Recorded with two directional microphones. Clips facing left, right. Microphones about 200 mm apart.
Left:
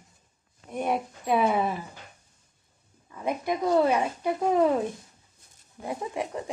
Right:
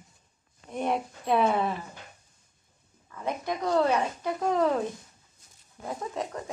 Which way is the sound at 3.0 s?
15° left (ahead or behind).